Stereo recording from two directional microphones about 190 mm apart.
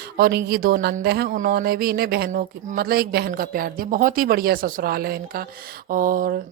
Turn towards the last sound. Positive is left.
turn(degrees=-45)  # may be behind; listen again after turning